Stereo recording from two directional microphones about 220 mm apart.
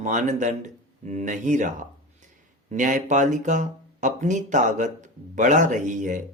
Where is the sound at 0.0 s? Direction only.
35° right (ahead or behind).